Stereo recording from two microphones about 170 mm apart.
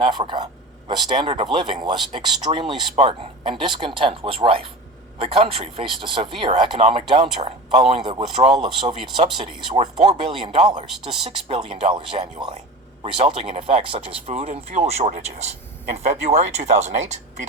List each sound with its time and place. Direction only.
0.0 s speech: 30° right (ahead or behind)